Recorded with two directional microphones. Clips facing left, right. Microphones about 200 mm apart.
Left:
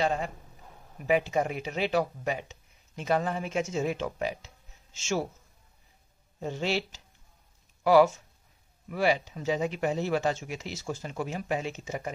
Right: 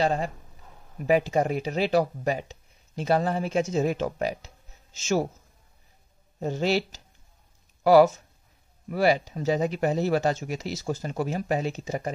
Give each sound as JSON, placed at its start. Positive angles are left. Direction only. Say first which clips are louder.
{"t": 0.0, "sound": "speech", "louder": "right 3 dB", "side_deg": -35}
{"t": 6.4, "sound": "speech", "louder": "right 5 dB", "side_deg": -40}